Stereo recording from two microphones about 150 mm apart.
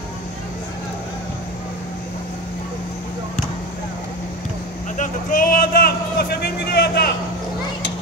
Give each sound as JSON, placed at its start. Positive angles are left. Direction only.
{"t": 4.9, "sound": "a man's voice", "side_deg": 60}